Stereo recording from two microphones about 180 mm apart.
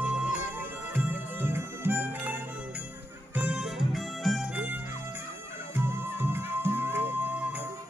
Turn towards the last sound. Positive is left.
turn(degrees=-10)  # may be behind; listen again after turning